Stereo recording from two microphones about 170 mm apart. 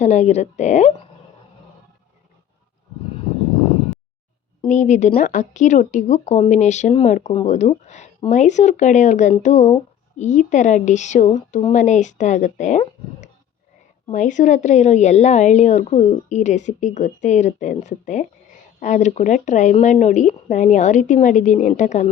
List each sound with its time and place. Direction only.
0.0 s speech: 45° left (ahead or behind)
4.6 s speech: 45° left (ahead or behind)
14.1 s speech: 50° left (ahead or behind)